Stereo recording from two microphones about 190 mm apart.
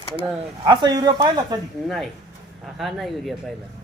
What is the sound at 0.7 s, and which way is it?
Speech, 20° right (ahead or behind).